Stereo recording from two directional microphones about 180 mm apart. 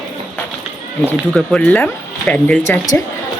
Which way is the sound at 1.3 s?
5° left (ahead or behind).